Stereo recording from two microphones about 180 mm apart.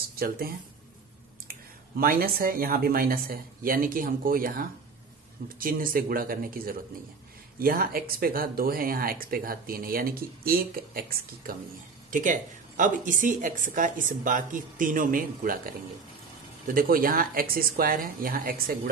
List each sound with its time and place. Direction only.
0.1 s speech: 55° right (ahead or behind)
2.0 s speech: 55° right (ahead or behind)